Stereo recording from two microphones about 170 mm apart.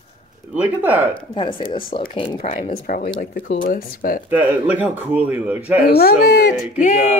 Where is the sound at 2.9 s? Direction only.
60° left (ahead or behind).